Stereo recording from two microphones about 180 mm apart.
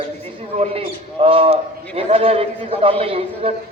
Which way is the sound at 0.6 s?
30° right (ahead or behind).